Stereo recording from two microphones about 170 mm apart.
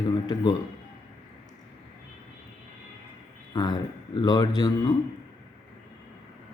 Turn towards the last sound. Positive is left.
turn(degrees=25)  # may be behind; listen again after turning